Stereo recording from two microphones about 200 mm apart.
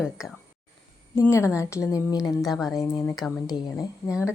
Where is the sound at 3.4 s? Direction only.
20° left (ahead or behind).